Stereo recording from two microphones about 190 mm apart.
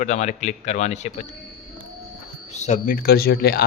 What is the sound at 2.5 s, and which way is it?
Speech, 40° left (ahead or behind).